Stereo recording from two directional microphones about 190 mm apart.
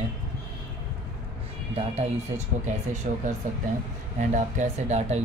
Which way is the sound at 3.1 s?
45° right (ahead or behind).